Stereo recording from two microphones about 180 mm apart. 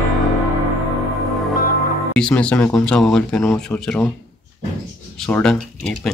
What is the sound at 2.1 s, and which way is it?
Speech, 5° left (ahead or behind).